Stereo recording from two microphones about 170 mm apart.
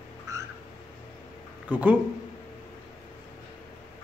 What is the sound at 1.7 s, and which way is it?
Speech, 10° right (ahead or behind).